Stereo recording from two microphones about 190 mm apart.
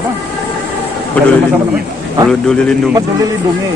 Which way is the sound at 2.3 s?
5° left (ahead or behind).